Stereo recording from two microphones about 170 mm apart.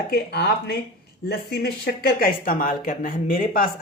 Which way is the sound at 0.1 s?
75° left (ahead or behind).